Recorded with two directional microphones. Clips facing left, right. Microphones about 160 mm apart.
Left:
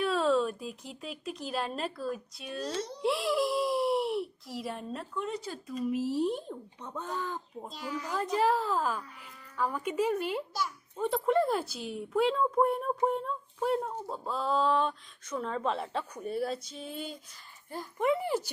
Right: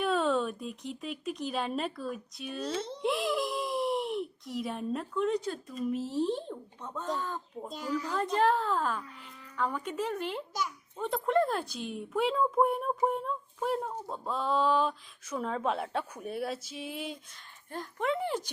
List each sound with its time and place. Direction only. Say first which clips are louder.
0.0 s speech: left 1 dB; centre (ahead or behind)
7.7 s speech: right 4 dB; 45° right (ahead or behind)
8.0 s a woman's voice: even; 10° left (ahead or behind)
17.7 s a woman's voice: left 3 dB; 10° left (ahead or behind)